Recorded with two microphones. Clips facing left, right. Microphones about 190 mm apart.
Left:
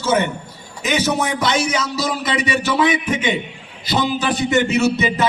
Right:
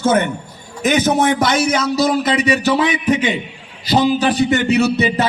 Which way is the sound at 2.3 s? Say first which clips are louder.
Right 4 dB; 40° right (ahead or behind).